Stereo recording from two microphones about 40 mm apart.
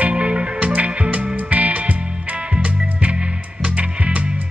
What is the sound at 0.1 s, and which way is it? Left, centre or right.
Music, right.